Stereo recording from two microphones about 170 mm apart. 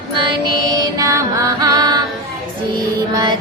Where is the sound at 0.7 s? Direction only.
20° right (ahead or behind).